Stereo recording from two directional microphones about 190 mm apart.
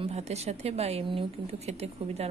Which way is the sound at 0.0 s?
35° right (ahead or behind).